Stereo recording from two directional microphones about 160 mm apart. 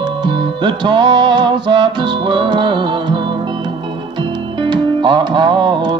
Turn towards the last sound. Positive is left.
turn(degrees=-30)  # may be behind; listen again after turning